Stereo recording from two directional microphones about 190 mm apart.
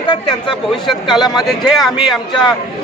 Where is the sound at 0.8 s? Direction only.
Centre (ahead or behind).